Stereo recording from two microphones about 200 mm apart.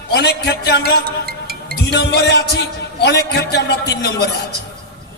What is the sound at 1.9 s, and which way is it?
A man's voice, 55° left (ahead or behind).